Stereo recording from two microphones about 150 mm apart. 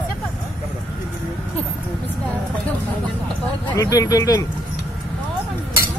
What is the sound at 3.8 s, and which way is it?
Speech, 25° left (ahead or behind).